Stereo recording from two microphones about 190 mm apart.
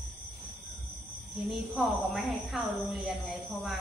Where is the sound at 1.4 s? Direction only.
5° right (ahead or behind).